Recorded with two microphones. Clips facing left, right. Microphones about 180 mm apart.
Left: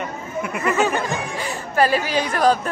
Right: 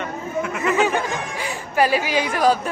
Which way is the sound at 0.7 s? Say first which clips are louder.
Even; 15° right (ahead or behind).